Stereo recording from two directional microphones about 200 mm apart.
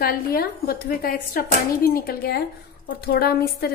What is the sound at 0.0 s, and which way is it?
A woman's voice, 45° left (ahead or behind).